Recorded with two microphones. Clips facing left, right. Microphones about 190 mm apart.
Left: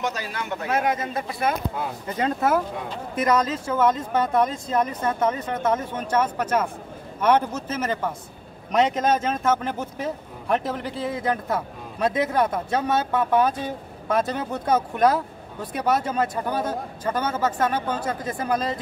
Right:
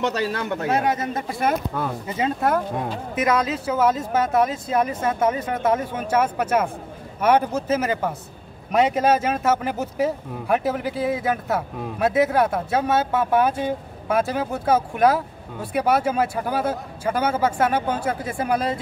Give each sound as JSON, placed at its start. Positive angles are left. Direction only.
{"t": 0.0, "sound": "speech", "side_deg": -50}
{"t": 0.7, "sound": "speech", "side_deg": -35}
{"t": 2.0, "sound": "speech", "side_deg": -5}